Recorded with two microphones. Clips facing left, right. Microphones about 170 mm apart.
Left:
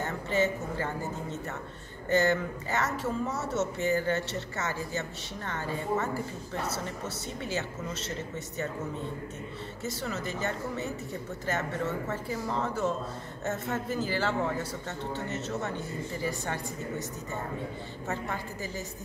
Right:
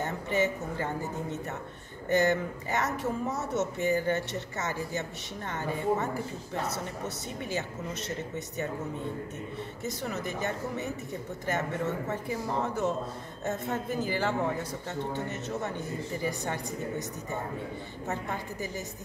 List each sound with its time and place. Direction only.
0.0 s a woman's voice: 20° right (ahead or behind)
7.5 s speech: 15° right (ahead or behind)
9.8 s speech: 15° right (ahead or behind)
18.0 s speech: 15° right (ahead or behind)